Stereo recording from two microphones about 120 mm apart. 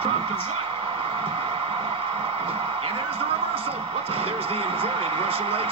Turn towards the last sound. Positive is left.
turn(degrees=-50)  # may be behind; listen again after turning